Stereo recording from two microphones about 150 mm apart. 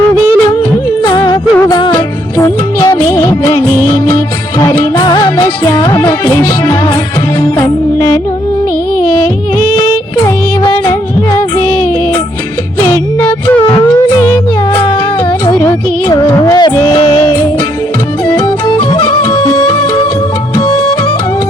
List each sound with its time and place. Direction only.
1.0 s music: 30° left (ahead or behind)
2.4 s music of bollywood: 20° left (ahead or behind)
4.6 s music: 25° left (ahead or behind)
10.2 s music: 25° left (ahead or behind)
12.8 s music: 20° left (ahead or behind)
14.7 s a sound: 35° left (ahead or behind)
15.4 s music: 25° left (ahead or behind)